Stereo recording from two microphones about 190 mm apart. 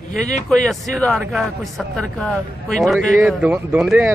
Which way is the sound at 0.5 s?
Centre (ahead or behind).